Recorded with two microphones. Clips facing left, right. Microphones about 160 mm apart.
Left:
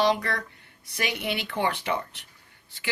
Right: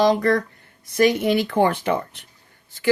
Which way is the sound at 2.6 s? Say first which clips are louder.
Right 13 dB; 45° right (ahead or behind).